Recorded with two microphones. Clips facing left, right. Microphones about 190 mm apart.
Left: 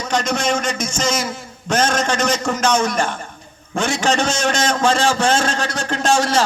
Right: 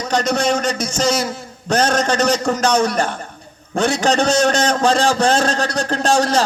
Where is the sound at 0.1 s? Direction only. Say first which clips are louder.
Right 2 dB; 35° right (ahead or behind).